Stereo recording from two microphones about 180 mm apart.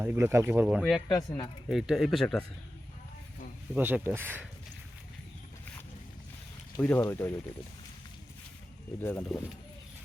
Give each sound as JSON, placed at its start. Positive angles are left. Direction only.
{"t": 0.0, "sound": "speech", "side_deg": -10}
{"t": 1.0, "sound": "speech", "side_deg": 20}
{"t": 1.6, "sound": "speech", "side_deg": 0}
{"t": 3.8, "sound": "speech", "side_deg": -10}
{"t": 6.7, "sound": "speech", "side_deg": 15}
{"t": 9.0, "sound": "speech", "side_deg": 15}